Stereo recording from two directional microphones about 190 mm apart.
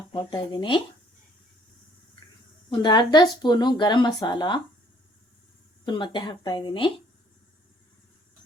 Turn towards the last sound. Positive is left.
turn(degrees=25)  # may be behind; listen again after turning